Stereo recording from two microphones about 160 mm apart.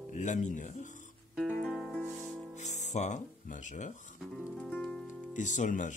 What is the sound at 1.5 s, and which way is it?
Music, centre (ahead or behind).